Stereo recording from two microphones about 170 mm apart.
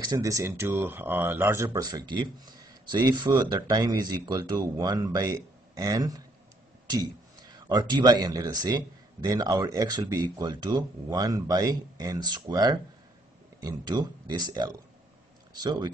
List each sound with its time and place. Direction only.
0.0 s speech: 20° right (ahead or behind)
7.5 s speech: 25° right (ahead or behind)